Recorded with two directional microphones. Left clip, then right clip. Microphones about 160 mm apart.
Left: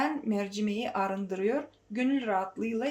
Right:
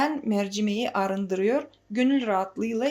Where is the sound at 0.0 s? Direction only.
35° right (ahead or behind).